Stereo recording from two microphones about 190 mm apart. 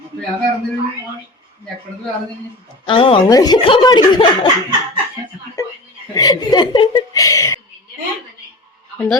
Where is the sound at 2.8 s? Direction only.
25° left (ahead or behind).